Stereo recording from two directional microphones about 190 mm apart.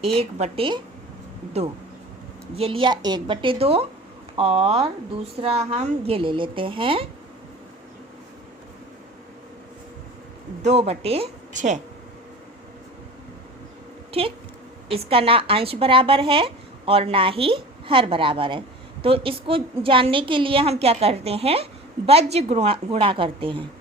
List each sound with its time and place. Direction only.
0.1 s a woman's voice: 35° right (ahead or behind)
2.6 s a woman's voice: 30° right (ahead or behind)
10.6 s a woman's voice: 35° right (ahead or behind)
14.1 s a woman's voice: 30° right (ahead or behind)